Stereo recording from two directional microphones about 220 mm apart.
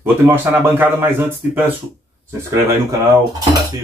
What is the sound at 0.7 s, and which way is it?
Speech, 10° right (ahead or behind).